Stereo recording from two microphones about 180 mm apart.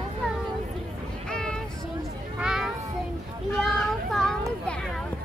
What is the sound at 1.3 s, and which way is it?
Vehicle, 5° left (ahead or behind).